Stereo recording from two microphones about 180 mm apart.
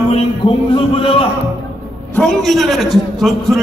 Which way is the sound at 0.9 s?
30° left (ahead or behind).